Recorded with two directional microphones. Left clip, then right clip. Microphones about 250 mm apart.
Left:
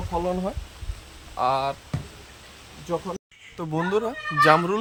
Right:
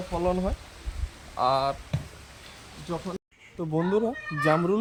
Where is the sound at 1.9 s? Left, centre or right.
Right.